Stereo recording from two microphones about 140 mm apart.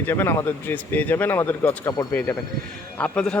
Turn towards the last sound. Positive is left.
turn(degrees=10)  # may be behind; listen again after turning